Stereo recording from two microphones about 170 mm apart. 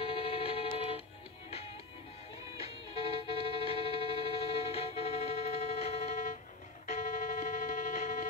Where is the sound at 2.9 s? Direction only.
35° left (ahead or behind).